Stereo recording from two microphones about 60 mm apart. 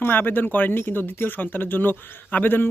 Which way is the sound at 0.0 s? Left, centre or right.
Left.